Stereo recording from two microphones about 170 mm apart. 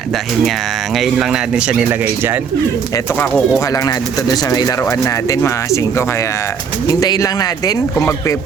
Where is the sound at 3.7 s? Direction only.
20° left (ahead or behind).